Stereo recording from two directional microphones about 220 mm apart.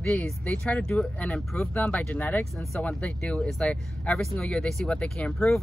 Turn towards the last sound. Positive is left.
turn(degrees=5)  # may be behind; listen again after turning